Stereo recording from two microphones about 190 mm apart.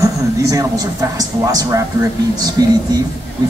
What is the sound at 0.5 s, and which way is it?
A man's voice, 20° right (ahead or behind).